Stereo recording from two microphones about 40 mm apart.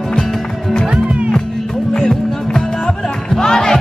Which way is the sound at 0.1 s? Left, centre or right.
Centre.